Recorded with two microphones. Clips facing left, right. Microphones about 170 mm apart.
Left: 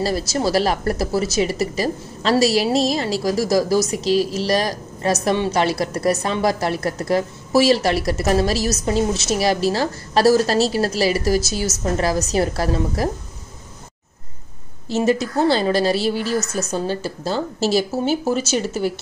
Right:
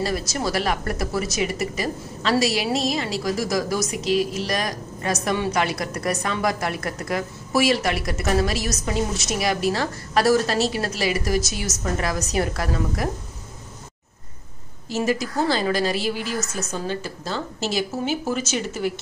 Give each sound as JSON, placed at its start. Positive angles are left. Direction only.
{"t": 0.0, "sound": "speech", "side_deg": 30}
{"t": 14.9, "sound": "speech", "side_deg": 25}